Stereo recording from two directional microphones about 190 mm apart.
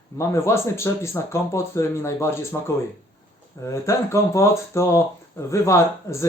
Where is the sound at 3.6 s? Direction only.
15° left (ahead or behind).